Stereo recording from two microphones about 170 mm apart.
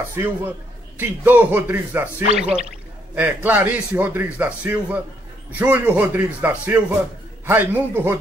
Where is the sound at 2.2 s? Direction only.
40° right (ahead or behind).